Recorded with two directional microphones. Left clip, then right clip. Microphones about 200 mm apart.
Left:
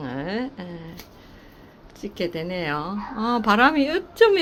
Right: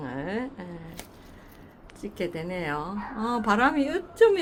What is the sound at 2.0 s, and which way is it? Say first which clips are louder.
Speech: left 4 dB; 15° left (ahead or behind).